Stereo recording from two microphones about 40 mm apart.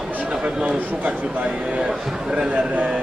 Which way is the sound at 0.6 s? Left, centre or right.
Right.